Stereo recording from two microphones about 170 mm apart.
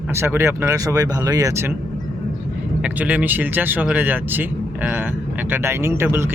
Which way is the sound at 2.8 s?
10° right (ahead or behind).